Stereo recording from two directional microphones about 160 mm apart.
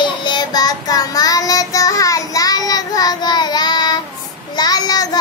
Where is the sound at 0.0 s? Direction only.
30° left (ahead or behind).